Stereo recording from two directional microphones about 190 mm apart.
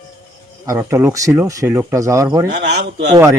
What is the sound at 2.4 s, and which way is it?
Speech, 60° right (ahead or behind).